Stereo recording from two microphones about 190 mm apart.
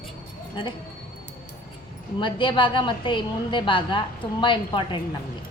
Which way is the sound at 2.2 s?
25° left (ahead or behind).